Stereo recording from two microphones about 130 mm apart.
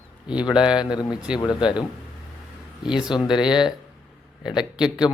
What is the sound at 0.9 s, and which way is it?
Speech, 35° left (ahead or behind).